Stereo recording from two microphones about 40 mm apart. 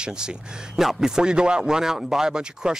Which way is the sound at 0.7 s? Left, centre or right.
Centre.